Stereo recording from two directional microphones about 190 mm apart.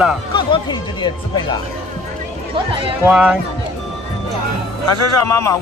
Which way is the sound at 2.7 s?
30° right (ahead or behind).